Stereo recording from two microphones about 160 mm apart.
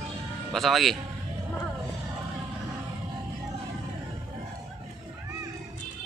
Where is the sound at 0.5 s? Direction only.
Centre (ahead or behind).